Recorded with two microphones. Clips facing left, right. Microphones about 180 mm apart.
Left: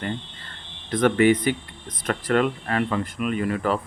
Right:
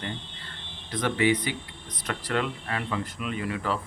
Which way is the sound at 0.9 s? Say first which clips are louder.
Left 7 dB; 50° left (ahead or behind).